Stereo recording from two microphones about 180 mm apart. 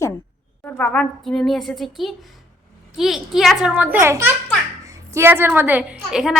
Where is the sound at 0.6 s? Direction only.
10° left (ahead or behind).